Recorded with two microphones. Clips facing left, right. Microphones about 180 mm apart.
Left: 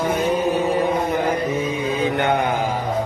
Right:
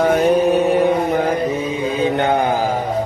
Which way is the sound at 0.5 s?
70° right (ahead or behind).